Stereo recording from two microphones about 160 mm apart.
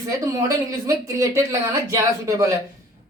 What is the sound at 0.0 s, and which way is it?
Speech, 20° right (ahead or behind).